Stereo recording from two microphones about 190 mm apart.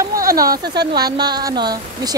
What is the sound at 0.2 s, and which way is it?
Speech, 20° right (ahead or behind).